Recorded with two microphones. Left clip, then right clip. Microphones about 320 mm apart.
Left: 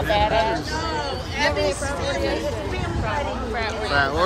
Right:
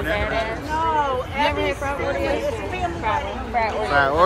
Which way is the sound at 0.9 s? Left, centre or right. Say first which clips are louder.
Right 5 dB; centre.